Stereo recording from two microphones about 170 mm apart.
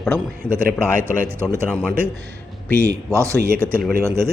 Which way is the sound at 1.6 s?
5° left (ahead or behind).